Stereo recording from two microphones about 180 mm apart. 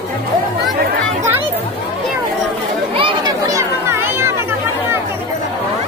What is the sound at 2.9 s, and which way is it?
Children playing, 25° right (ahead or behind).